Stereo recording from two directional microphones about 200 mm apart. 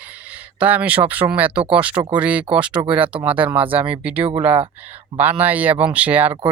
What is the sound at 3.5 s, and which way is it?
Speech, 10° right (ahead or behind).